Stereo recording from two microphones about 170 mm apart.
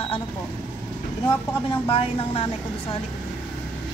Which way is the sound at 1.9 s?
35° left (ahead or behind).